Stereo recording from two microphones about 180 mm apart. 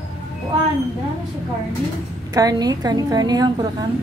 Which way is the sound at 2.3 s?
20° right (ahead or behind).